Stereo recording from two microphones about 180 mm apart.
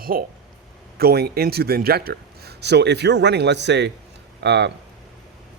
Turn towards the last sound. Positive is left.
turn(degrees=-70)  # may be behind; listen again after turning